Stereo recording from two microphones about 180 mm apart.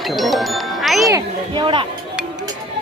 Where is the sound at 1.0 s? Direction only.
20° right (ahead or behind).